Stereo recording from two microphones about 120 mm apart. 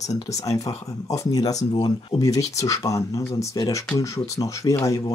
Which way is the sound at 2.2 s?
30° left (ahead or behind).